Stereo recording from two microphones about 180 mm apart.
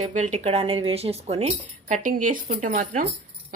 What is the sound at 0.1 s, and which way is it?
Speech, 40° right (ahead or behind).